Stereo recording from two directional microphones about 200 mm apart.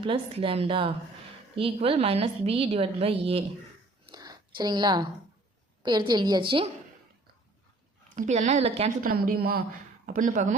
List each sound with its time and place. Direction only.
0.0 s a woman's voice: 25° right (ahead or behind)
4.0 s a sound: 20° right (ahead or behind)
5.8 s a woman's voice: 20° right (ahead or behind)
8.1 s a woman's voice: 40° right (ahead or behind)
9.0 s a woman's voice: 45° right (ahead or behind)